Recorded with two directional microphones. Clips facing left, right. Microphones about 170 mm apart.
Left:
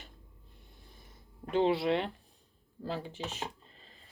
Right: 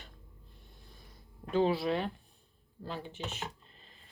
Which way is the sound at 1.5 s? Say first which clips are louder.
Left 1 dB; 20° left (ahead or behind).